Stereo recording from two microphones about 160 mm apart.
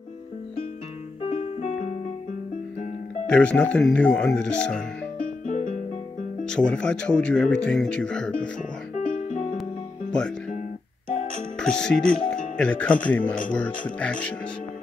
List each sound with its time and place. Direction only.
1.2 s music: 40° left (ahead or behind)
3.3 s speech: 5° left (ahead or behind)
5.5 s music: 55° left (ahead or behind)
6.4 s speech: 5° left (ahead or behind)
8.9 s music: 50° left (ahead or behind)
11.6 s speech: 5° left (ahead or behind)